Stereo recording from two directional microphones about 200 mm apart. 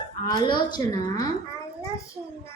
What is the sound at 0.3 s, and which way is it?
A woman's voice, 20° left (ahead or behind).